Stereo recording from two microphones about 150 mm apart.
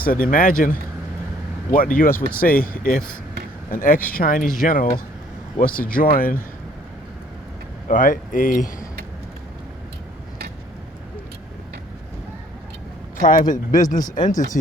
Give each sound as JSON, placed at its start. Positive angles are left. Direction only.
{"t": 0.0, "sound": "speech", "side_deg": 70}
{"t": 7.9, "sound": "speech", "side_deg": 65}
{"t": 13.2, "sound": "speech", "side_deg": 65}